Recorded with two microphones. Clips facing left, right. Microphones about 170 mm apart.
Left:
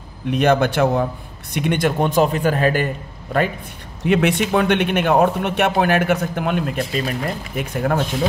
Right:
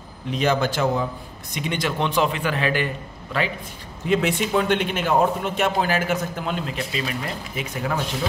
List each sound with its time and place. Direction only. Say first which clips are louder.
0.3 s speech: left 5 dB; 60° left (ahead or behind)
4.0 s speech: left 4 dB; 65° left (ahead or behind)